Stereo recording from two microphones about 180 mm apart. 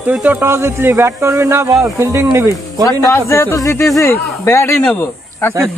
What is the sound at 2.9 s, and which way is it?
A man's voice, 15° left (ahead or behind).